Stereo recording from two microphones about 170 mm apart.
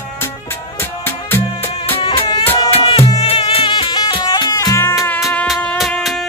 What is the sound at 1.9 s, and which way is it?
Music, 35° left (ahead or behind).